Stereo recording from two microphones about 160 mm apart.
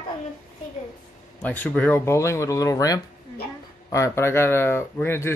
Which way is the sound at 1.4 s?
10° left (ahead or behind).